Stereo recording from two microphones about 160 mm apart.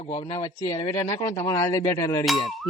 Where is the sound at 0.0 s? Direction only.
40° left (ahead or behind).